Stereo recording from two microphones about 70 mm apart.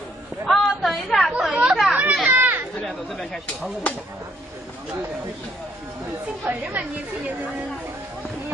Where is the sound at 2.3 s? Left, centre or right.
Right.